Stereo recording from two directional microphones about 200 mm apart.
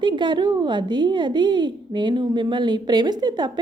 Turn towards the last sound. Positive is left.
turn(degrees=-20)  # may be behind; listen again after turning